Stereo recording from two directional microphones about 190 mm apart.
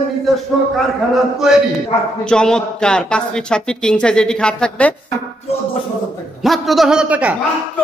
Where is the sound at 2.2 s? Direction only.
5° left (ahead or behind).